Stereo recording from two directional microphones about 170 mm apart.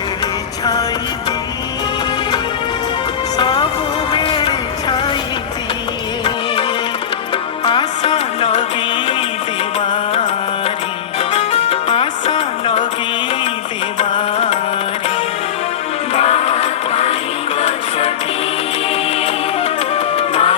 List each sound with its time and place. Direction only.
0.6 s music: 20° left (ahead or behind)
3.3 s music: 25° left (ahead or behind)
7.6 s music: 30° left (ahead or behind)
9.8 s music: 30° left (ahead or behind)
11.3 s music: 35° left (ahead or behind)
14.1 s music: 25° left (ahead or behind)
16.1 s music: 35° left (ahead or behind)
20.1 s music: 35° left (ahead or behind)